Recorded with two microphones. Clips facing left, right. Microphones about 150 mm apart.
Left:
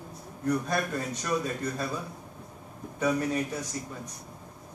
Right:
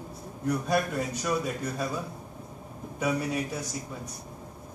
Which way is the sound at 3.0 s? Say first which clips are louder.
Left 1 dB; 10° right (ahead or behind).